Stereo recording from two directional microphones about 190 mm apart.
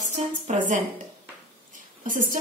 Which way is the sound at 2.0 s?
45° right (ahead or behind).